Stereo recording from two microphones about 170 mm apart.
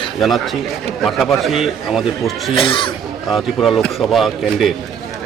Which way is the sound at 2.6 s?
30° left (ahead or behind).